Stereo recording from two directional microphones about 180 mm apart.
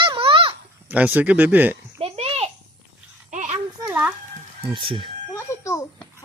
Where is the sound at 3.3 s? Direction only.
40° right (ahead or behind).